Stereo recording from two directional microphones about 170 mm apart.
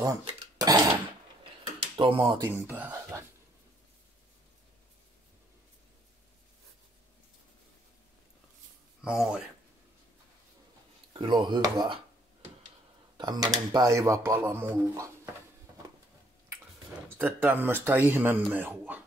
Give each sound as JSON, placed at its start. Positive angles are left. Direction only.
{"t": 0.2, "sound": "speech", "side_deg": -25}
{"t": 1.4, "sound": "dishes", "side_deg": -30}
{"t": 2.5, "sound": "speech", "side_deg": -10}
{"t": 9.0, "sound": "speech", "side_deg": -5}
{"t": 11.1, "sound": "speech", "side_deg": -25}
{"t": 13.2, "sound": "speech", "side_deg": -25}
{"t": 17.2, "sound": "speech", "side_deg": -10}